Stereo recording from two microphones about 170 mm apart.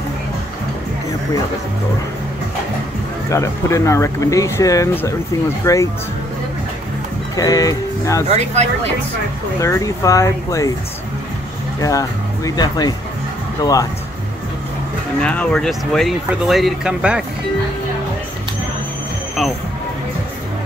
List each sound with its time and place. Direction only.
3.3 s speech: 15° left (ahead or behind)
7.3 s speech: 20° left (ahead or behind)
8.3 s speech: 40° right (ahead or behind)
9.6 s speech: 20° left (ahead or behind)
11.8 s speech: 20° left (ahead or behind)
15.2 s speech: 5° left (ahead or behind)